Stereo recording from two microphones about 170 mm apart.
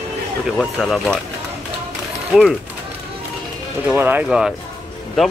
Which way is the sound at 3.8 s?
10° right (ahead or behind).